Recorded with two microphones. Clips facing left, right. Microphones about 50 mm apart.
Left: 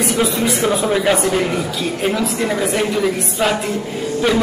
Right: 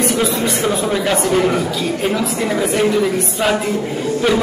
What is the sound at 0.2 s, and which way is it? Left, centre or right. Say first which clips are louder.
A man's voice: even; centre.